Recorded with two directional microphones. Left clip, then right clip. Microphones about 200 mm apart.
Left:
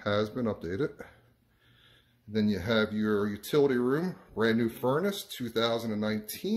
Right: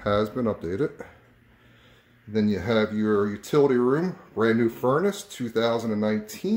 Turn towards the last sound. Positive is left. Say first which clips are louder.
# right 6 dB
turn(degrees=-5)  # may be behind; listen again after turning